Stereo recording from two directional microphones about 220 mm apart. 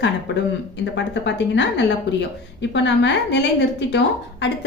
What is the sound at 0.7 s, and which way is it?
A woman's voice, 55° left (ahead or behind).